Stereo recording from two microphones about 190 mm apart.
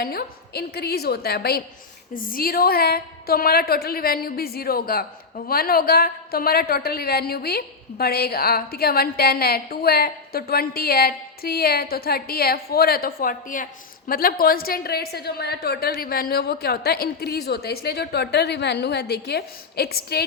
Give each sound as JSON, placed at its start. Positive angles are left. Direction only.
{"t": 0.0, "sound": "a woman's voice", "side_deg": 55}